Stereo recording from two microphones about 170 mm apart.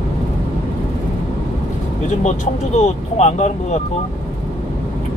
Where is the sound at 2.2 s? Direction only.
45° left (ahead or behind).